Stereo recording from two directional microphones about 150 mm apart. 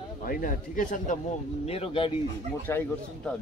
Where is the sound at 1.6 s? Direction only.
40° left (ahead or behind).